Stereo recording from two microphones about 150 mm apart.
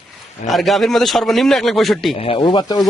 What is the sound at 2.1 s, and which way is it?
Speech, 40° left (ahead or behind).